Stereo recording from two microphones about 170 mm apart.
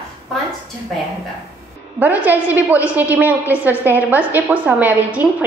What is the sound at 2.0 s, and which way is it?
A woman's voice, 10° right (ahead or behind).